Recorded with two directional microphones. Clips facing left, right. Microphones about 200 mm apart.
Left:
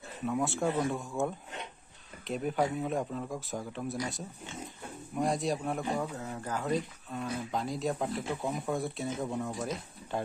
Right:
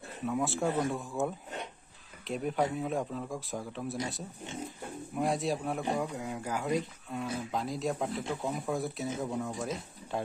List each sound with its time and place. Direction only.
0.2 s speech: centre (ahead or behind)
6.1 s speech: 15° right (ahead or behind)